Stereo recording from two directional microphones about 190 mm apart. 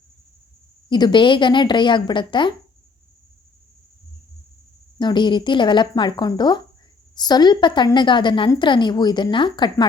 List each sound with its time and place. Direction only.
0.9 s a woman's voice: 25° left (ahead or behind)
4.9 s a woman's voice: 25° left (ahead or behind)